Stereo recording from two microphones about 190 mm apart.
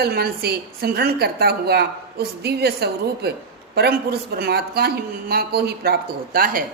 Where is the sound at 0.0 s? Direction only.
55° right (ahead or behind).